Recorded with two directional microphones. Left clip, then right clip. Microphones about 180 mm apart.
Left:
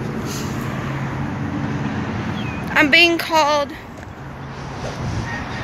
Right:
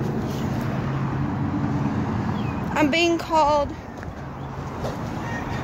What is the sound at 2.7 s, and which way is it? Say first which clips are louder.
Speech: left 8 dB; 5° right (ahead or behind).